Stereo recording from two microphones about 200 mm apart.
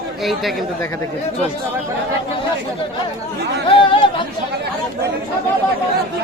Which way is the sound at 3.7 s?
25° left (ahead or behind).